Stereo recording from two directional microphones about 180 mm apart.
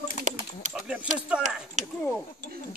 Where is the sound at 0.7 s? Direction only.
5° right (ahead or behind).